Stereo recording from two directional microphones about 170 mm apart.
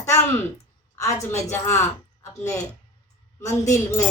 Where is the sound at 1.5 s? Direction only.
15° left (ahead or behind).